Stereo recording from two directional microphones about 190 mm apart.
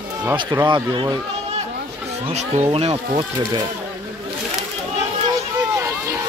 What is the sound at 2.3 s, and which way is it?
Speech, 35° right (ahead or behind).